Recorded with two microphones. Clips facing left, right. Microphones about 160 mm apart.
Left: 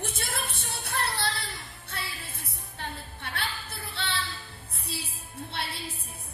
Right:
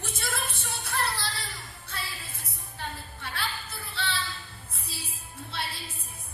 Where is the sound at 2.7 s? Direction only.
60° left (ahead or behind).